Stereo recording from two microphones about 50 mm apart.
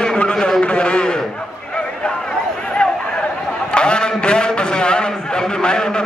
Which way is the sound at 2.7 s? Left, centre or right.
Left.